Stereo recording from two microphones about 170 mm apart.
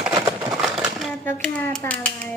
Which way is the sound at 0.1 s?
20° right (ahead or behind).